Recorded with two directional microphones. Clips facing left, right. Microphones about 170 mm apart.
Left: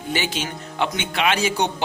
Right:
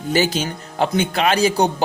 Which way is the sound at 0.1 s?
40° right (ahead or behind).